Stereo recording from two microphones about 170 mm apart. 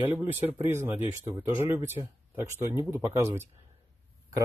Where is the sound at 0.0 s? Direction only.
10° right (ahead or behind).